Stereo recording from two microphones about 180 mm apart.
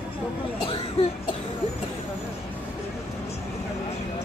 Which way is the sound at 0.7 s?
30° left (ahead or behind).